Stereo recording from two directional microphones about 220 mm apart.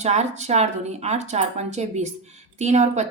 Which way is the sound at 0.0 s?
30° right (ahead or behind).